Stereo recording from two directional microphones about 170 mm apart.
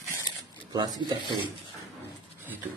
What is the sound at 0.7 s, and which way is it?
Speech, 25° right (ahead or behind).